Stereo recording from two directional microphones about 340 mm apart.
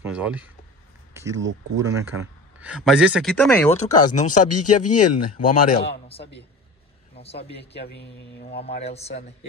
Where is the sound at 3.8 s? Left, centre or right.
Left.